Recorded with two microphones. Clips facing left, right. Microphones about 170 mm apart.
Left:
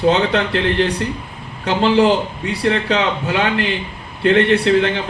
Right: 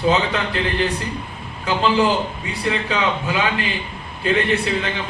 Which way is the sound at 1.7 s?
70° left (ahead or behind).